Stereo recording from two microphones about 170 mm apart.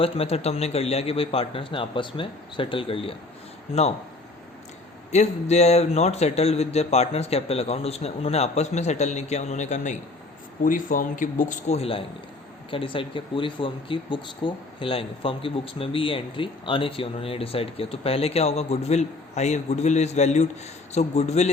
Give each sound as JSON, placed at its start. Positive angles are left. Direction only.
{"t": 0.0, "sound": "speech", "side_deg": 35}
{"t": 5.1, "sound": "a man's voice", "side_deg": 40}